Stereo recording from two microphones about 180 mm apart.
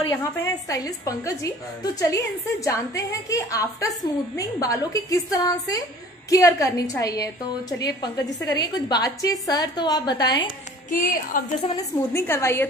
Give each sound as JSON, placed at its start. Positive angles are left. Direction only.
{"t": 0.1, "sound": "a woman's voice", "side_deg": 15}
{"t": 10.9, "sound": "speech", "side_deg": 50}
{"t": 11.7, "sound": "a woman's voice", "side_deg": 15}